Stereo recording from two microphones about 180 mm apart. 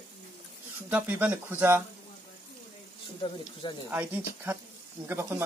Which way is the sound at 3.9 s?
10° right (ahead or behind).